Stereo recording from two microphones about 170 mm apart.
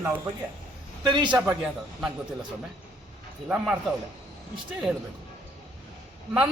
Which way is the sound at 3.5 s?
5° right (ahead or behind).